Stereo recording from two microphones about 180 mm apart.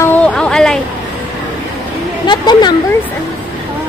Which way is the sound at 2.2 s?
25° left (ahead or behind).